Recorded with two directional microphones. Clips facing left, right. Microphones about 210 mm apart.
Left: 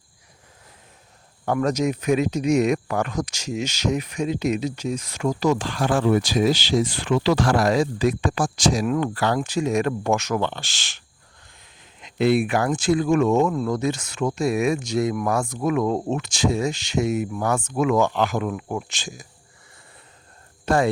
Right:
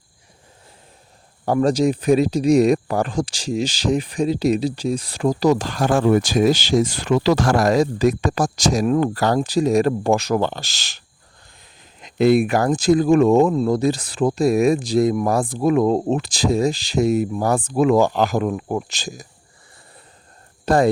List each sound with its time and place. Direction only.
1.5 s speech: 30° right (ahead or behind)
20.7 s speech: 35° right (ahead or behind)